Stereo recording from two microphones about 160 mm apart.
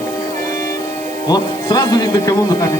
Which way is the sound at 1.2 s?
25° left (ahead or behind).